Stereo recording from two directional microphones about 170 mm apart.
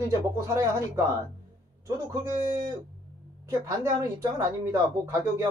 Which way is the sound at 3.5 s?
20° right (ahead or behind).